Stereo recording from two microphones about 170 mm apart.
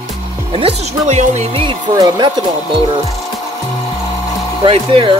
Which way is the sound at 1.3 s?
40° right (ahead or behind).